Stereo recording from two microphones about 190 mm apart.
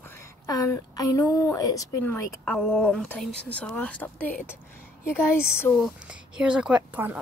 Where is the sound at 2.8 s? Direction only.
5° left (ahead or behind).